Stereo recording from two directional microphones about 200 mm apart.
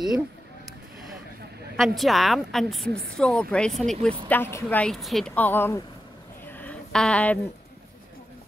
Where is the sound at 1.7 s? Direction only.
Centre (ahead or behind).